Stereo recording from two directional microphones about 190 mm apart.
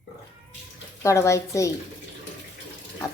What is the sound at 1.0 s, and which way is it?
Speech, 15° left (ahead or behind).